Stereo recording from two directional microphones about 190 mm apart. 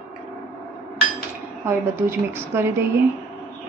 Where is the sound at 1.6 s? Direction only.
15° right (ahead or behind).